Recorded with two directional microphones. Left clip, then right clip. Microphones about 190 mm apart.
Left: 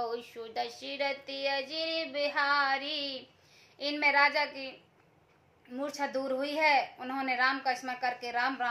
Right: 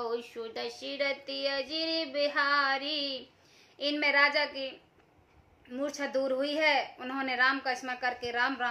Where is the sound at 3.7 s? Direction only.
15° right (ahead or behind).